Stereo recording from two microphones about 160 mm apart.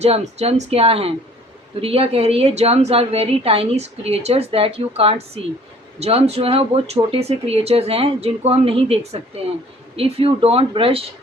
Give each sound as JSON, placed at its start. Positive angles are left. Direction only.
{"t": 0.0, "sound": "a woman's voice", "side_deg": -40}